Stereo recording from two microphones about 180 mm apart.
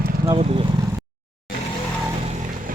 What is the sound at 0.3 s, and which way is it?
Speech, 30° right (ahead or behind).